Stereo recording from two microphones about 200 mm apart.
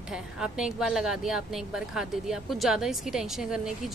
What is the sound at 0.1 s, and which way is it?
A woman's voice, 5° right (ahead or behind).